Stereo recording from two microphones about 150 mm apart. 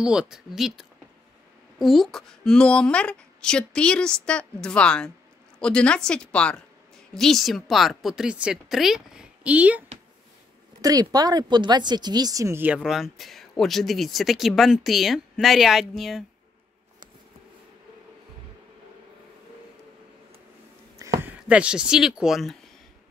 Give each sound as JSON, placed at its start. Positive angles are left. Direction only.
{"t": 0.0, "sound": "a woman's voice", "side_deg": -5}
{"t": 10.8, "sound": "speech", "side_deg": -25}
{"t": 21.0, "sound": "a sound", "side_deg": -20}
{"t": 21.5, "sound": "speech", "side_deg": -5}